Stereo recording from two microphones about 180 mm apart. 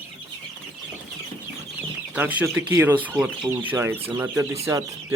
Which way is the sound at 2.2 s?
10° right (ahead or behind).